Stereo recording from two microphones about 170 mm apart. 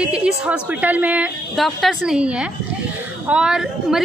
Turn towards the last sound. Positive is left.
turn(degrees=-5)  # may be behind; listen again after turning